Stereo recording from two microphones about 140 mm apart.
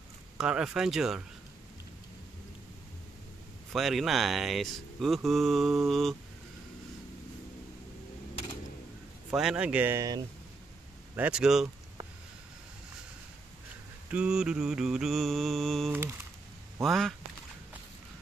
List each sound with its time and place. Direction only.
0.4 s speech: 5° right (ahead or behind)
3.7 s speech: centre (ahead or behind)
9.3 s a man's voice: 5° right (ahead or behind)
11.1 s a man's voice: 10° right (ahead or behind)
14.1 s speech: 5° right (ahead or behind)
15.9 s a man's voice: 15° right (ahead or behind)
16.8 s speech: centre (ahead or behind)